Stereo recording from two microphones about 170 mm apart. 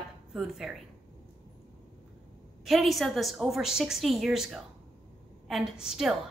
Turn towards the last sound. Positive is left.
turn(degrees=-5)  # may be behind; listen again after turning